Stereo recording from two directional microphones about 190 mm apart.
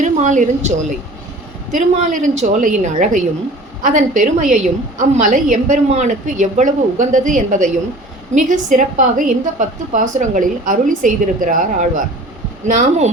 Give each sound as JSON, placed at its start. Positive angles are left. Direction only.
{"t": 0.0, "sound": "a woman's voice", "side_deg": -40}